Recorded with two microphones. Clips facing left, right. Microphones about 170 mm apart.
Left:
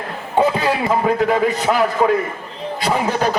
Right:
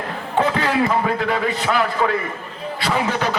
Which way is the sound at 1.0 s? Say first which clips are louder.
Left 5 dB; 40° left (ahead or behind).